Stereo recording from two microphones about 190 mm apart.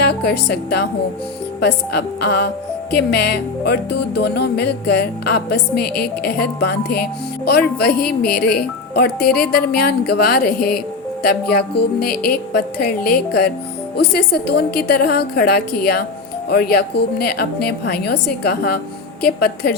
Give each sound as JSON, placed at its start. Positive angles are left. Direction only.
{"t": 0.0, "sound": "speech", "side_deg": 60}
{"t": 1.6, "sound": "music", "side_deg": 60}